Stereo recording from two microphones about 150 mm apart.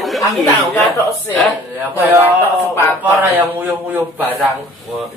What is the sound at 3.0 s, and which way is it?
Speech, 10° right (ahead or behind).